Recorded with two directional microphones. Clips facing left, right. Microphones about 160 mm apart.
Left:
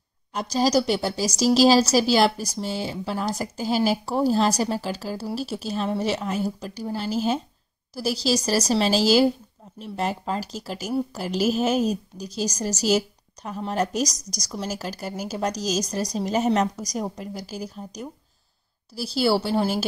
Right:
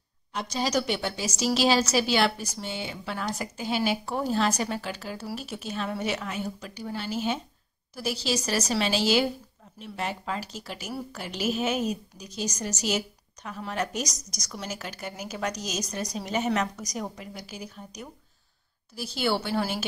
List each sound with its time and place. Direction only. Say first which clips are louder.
0.3 s a woman's voice: left 6 dB; 40° left (ahead or behind)